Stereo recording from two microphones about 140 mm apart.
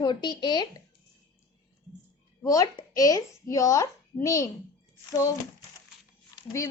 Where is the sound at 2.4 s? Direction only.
25° left (ahead or behind).